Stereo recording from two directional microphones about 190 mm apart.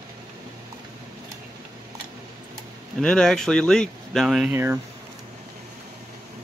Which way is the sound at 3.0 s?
5° left (ahead or behind).